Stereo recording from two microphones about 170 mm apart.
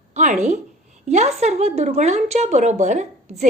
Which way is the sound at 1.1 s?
40° right (ahead or behind).